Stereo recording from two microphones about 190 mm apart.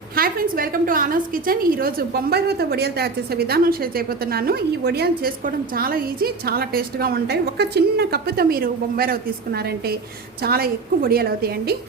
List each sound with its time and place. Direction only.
0.2 s a woman's voice: 50° right (ahead or behind)